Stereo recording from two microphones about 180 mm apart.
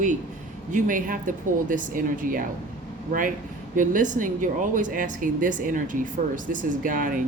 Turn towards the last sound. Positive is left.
turn(degrees=-50)  # may be behind; listen again after turning